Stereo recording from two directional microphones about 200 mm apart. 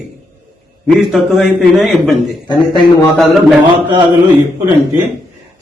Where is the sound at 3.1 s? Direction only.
Centre (ahead or behind).